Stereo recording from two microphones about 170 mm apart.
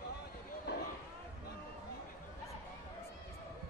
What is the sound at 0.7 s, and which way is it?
Basketball bounce, 75° left (ahead or behind).